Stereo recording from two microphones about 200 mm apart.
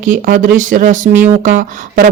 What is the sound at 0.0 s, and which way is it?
Speech, 40° right (ahead or behind).